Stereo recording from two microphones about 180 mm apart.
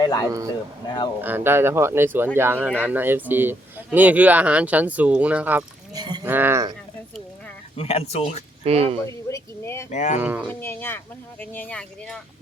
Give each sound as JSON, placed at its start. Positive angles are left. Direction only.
{"t": 0.0, "sound": "speech", "side_deg": 20}
{"t": 1.2, "sound": "speech", "side_deg": -10}
{"t": 5.9, "sound": "livestock", "side_deg": -25}
{"t": 6.2, "sound": "speech", "side_deg": -10}
{"t": 7.8, "sound": "speech", "side_deg": 35}
{"t": 8.6, "sound": "speech", "side_deg": -35}
{"t": 9.0, "sound": "a sound", "side_deg": 15}
{"t": 9.9, "sound": "speech", "side_deg": 40}
{"t": 10.2, "sound": "speech", "side_deg": -10}
{"t": 10.4, "sound": "speech", "side_deg": 10}